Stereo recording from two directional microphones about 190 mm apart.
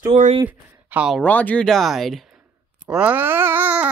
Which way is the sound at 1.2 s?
10° left (ahead or behind).